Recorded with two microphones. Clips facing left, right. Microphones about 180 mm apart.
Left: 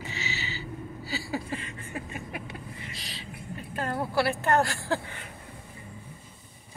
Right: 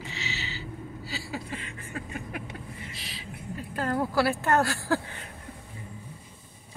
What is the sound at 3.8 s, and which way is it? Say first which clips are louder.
Speech: right 2 dB; 15° left (ahead or behind).